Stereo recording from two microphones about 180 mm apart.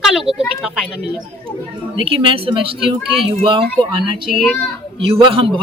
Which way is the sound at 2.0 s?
30° right (ahead or behind).